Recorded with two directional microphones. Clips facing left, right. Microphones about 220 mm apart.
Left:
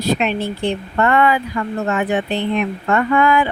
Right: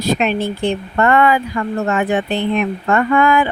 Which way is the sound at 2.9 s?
45° right (ahead or behind).